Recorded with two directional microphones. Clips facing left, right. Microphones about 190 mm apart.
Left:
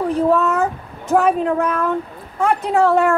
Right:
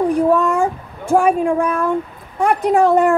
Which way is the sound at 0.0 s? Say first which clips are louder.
Right 2 dB; 15° right (ahead or behind).